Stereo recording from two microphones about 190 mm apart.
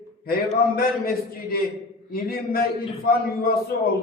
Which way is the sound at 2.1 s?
50° left (ahead or behind).